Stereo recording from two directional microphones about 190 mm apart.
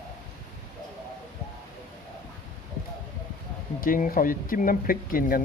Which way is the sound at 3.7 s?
45° left (ahead or behind).